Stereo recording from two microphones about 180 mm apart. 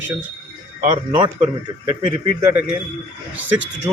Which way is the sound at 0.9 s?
25° right (ahead or behind).